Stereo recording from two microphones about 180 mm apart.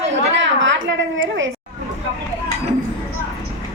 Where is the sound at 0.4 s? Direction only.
90° right.